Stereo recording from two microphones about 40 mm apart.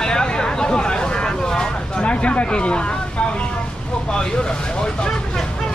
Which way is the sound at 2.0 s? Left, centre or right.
Left.